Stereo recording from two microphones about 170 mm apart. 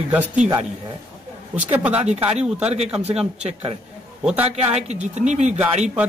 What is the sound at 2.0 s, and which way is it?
Speech, 40° right (ahead or behind).